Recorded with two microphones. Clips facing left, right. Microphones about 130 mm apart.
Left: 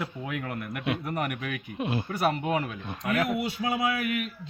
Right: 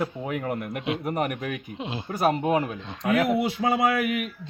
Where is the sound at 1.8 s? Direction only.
20° right (ahead or behind).